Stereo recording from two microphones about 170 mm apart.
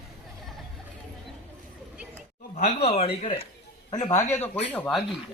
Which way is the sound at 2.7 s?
35° left (ahead or behind).